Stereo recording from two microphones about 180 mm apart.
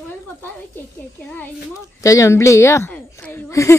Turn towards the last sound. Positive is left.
turn(degrees=15)  # may be behind; listen again after turning